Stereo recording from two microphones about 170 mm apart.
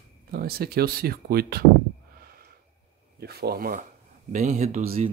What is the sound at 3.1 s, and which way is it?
Speech, 70° right (ahead or behind).